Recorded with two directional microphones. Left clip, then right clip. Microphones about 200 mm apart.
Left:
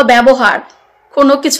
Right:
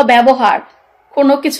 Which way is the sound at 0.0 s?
20° left (ahead or behind).